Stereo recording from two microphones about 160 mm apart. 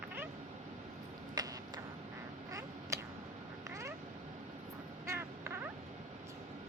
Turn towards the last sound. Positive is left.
turn(degrees=-15)  # may be behind; listen again after turning